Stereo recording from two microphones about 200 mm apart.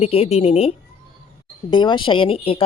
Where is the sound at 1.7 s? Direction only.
25° left (ahead or behind).